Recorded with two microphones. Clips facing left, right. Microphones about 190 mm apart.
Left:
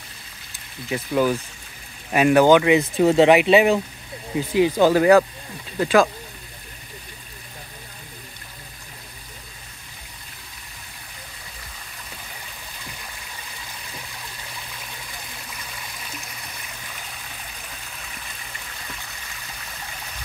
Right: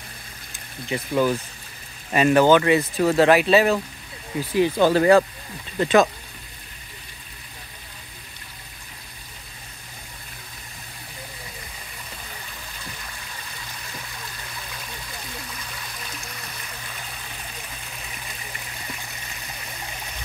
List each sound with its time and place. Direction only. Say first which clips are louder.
0.8 s speech: left 1 dB; 5° left (ahead or behind)
5.8 s speech: even; centre (ahead or behind)